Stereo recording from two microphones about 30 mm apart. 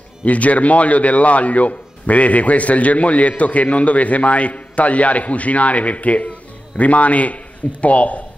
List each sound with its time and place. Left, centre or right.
0.2 s a man's voice: left